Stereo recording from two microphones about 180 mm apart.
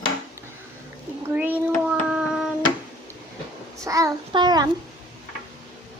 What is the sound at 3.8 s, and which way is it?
Child singing, 20° right (ahead or behind).